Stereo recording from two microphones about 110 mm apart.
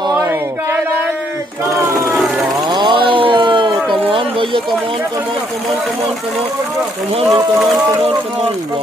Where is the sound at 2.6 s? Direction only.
45° right (ahead or behind).